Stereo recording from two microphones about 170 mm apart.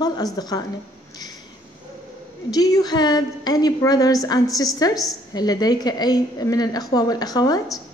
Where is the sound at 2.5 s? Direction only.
20° left (ahead or behind).